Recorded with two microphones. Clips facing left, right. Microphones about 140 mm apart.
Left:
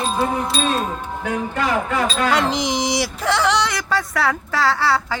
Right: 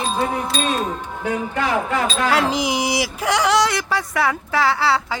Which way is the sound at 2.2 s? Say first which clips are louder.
Right 2 dB; 10° right (ahead or behind).